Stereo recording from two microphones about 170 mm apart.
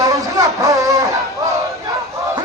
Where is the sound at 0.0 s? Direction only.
20° right (ahead or behind).